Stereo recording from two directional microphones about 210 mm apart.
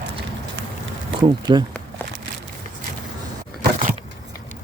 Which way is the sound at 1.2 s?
20° right (ahead or behind).